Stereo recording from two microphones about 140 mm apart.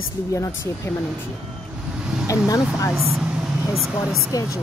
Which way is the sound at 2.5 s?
20° left (ahead or behind).